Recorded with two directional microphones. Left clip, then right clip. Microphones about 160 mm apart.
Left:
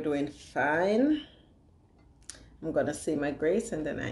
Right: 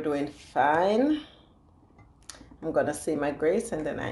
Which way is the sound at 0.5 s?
40° right (ahead or behind).